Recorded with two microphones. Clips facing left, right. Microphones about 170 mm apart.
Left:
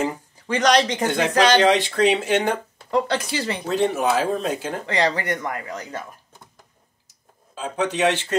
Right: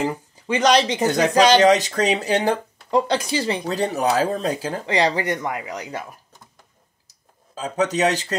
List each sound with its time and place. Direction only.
0.5 s speech: 10° right (ahead or behind)
1.0 s speech: 40° right (ahead or behind)
2.9 s speech: 15° right (ahead or behind)
3.6 s speech: 40° right (ahead or behind)
5.0 s speech: 15° right (ahead or behind)
7.5 s speech: 40° right (ahead or behind)